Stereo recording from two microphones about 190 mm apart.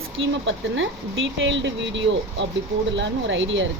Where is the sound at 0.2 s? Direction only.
80° right.